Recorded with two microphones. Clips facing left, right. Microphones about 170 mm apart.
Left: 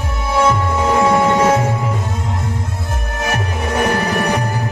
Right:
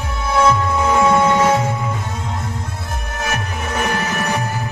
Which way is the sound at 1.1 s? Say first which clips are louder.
Even; 15° left (ahead or behind).